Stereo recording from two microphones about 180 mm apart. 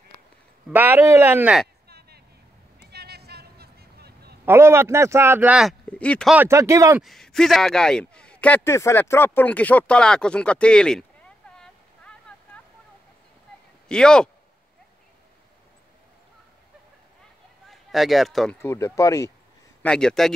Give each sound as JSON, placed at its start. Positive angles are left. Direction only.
{"t": 0.7, "sound": "speech", "side_deg": -10}
{"t": 1.9, "sound": "a sound", "side_deg": -60}
{"t": 4.5, "sound": "speech", "side_deg": -15}
{"t": 6.3, "sound": "speech", "side_deg": -15}
{"t": 7.0, "sound": "speech", "side_deg": 0}
{"t": 11.5, "sound": "a sound", "side_deg": 5}
{"t": 13.8, "sound": "speech", "side_deg": 5}
{"t": 17.6, "sound": "speech", "side_deg": 0}
{"t": 18.6, "sound": "speech", "side_deg": 15}
{"t": 19.8, "sound": "speech", "side_deg": 5}